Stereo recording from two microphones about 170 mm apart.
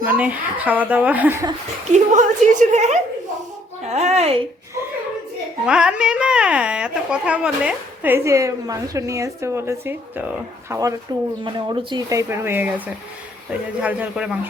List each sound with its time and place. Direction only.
0.0 s a woman's voice: 10° right (ahead or behind)
1.9 s a woman's voice: 45° right (ahead or behind)
5.6 s a woman's voice: 5° right (ahead or behind)
11.4 s a woman's voice: 30° right (ahead or behind); by 14.3 s 5° right (ahead or behind)